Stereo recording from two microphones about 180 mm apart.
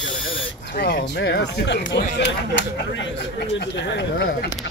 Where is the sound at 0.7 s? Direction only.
55° left (ahead or behind); by 1.7 s 75° left (ahead or behind).